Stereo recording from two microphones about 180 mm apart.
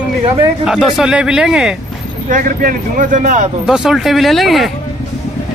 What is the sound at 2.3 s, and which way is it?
A man's voice, 45° right (ahead or behind).